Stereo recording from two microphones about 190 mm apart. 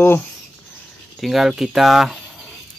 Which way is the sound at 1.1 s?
Centre (ahead or behind).